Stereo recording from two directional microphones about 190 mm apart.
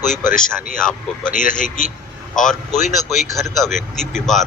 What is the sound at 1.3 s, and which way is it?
Speech, 45° left (ahead or behind).